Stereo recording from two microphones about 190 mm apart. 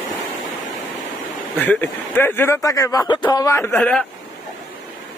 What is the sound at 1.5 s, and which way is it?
Speech, 10° left (ahead or behind).